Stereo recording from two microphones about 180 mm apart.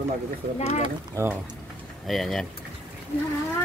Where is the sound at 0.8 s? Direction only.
20° right (ahead or behind).